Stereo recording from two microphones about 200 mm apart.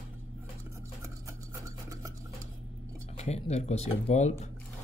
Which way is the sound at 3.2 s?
35° left (ahead or behind).